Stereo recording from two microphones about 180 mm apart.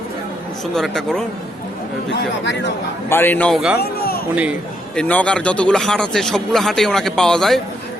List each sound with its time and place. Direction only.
0.7 s speech: 5° left (ahead or behind)
2.1 s speech: 75° left (ahead or behind)
3.1 s a man's voice: 10° left (ahead or behind)
3.8 s a sound: 60° left (ahead or behind)
4.9 s speech: 5° left (ahead or behind)